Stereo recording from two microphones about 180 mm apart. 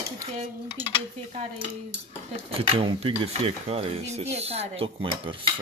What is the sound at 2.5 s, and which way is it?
Speech, 30° right (ahead or behind).